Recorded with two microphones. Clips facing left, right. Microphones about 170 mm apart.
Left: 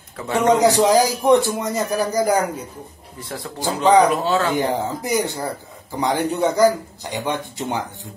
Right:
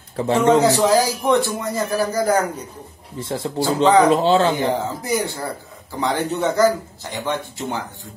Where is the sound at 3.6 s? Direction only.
15° left (ahead or behind).